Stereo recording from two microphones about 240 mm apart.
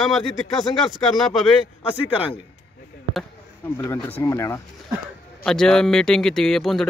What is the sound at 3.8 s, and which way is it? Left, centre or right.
Speech, centre.